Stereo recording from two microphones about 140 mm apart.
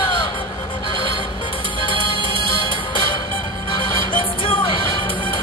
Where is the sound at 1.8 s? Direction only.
35° left (ahead or behind).